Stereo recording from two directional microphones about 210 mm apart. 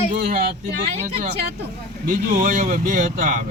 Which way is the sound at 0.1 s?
45° right (ahead or behind).